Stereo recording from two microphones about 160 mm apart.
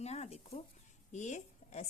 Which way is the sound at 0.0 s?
45° left (ahead or behind).